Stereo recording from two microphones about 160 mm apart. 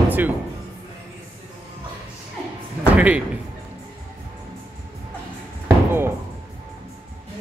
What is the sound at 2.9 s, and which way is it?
Slam, 10° right (ahead or behind).